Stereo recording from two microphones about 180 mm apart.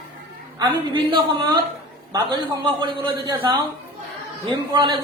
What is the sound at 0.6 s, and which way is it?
A man's voice, 25° right (ahead or behind).